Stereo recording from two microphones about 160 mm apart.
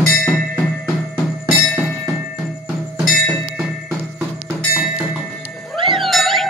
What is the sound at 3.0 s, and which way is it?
Music, centre (ahead or behind).